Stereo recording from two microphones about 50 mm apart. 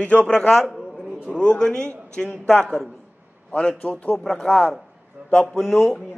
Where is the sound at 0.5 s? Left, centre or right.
Centre.